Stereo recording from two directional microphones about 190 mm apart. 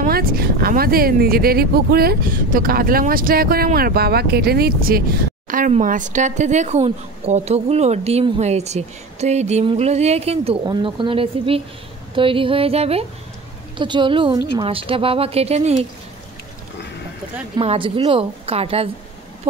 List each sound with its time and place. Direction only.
0.0 s speech: 50° right (ahead or behind)
5.5 s a woman's voice: 45° right (ahead or behind)
17.6 s a woman's voice: 30° right (ahead or behind)